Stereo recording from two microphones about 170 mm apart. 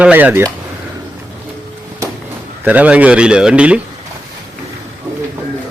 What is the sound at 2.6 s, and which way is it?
Speech, 10° right (ahead or behind).